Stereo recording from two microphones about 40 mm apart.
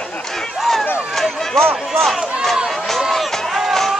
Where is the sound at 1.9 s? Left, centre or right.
Centre.